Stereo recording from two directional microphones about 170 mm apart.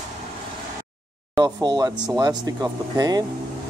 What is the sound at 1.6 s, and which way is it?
Speech, 25° right (ahead or behind).